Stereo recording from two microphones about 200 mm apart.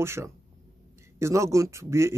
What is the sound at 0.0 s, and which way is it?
Speech, 15° right (ahead or behind).